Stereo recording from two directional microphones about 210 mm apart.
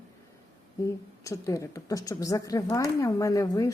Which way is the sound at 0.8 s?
15° left (ahead or behind).